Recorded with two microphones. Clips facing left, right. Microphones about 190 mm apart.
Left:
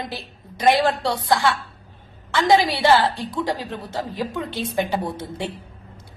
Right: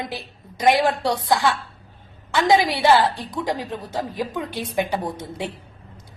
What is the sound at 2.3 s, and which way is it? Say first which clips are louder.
A woman's voice: even; 20° right (ahead or behind).